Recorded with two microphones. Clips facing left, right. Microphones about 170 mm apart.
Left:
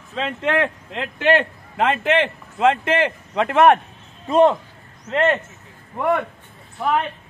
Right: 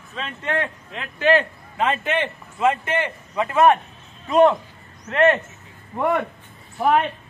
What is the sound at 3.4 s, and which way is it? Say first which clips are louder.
Speech: left 2 dB; 65° left (ahead or behind).